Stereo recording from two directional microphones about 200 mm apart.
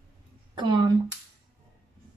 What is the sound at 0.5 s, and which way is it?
Speech, 20° right (ahead or behind).